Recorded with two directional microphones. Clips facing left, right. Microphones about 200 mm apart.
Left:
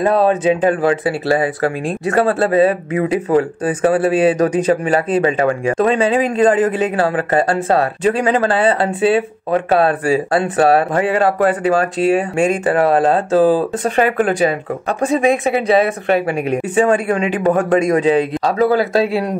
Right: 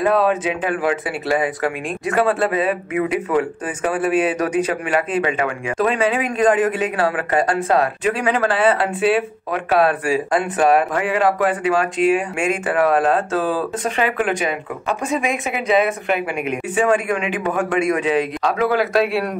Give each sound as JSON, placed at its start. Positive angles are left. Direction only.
{"t": 0.0, "sound": "speech", "side_deg": 30}